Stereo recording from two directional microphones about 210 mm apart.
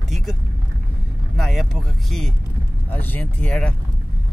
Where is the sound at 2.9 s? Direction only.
10° left (ahead or behind).